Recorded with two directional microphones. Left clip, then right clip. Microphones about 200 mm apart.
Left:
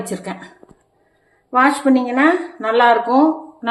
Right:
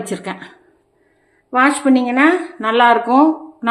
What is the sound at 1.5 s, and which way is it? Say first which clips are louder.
A woman's voice: even; 20° right (ahead or behind).